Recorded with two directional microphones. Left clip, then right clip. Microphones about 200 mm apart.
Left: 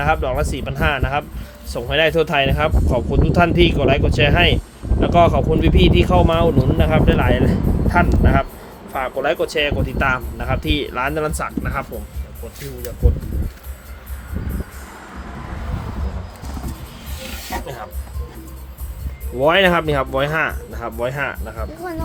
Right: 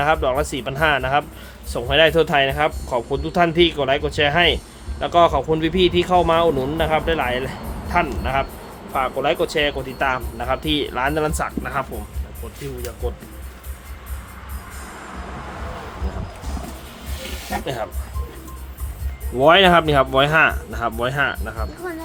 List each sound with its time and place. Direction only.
0.0 s speech: 5° right (ahead or behind)
19.4 s speech: 10° right (ahead or behind)